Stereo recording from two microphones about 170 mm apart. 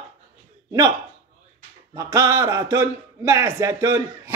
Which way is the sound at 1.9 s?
20° right (ahead or behind).